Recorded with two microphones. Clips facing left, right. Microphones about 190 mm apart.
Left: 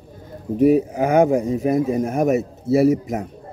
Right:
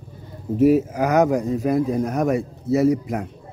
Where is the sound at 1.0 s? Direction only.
25° left (ahead or behind).